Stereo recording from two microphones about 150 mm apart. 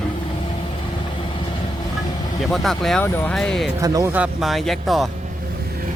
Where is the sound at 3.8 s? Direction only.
20° right (ahead or behind).